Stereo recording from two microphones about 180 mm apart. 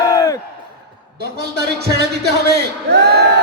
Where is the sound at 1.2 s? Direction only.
65° right (ahead or behind).